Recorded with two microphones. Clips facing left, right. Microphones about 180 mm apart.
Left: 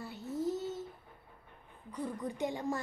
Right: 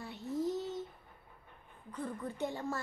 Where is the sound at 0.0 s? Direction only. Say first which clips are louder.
Even; centre (ahead or behind).